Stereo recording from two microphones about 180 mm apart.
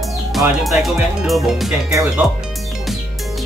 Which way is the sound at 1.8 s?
15° right (ahead or behind).